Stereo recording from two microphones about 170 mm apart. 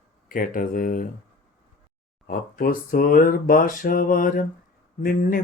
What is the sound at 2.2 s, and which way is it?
Speech, 60° left (ahead or behind).